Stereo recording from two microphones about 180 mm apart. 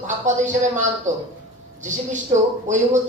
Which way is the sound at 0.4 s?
45° right (ahead or behind).